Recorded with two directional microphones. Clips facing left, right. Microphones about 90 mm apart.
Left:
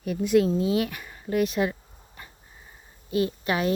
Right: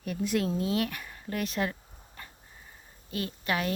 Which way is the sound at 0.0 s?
5° left (ahead or behind).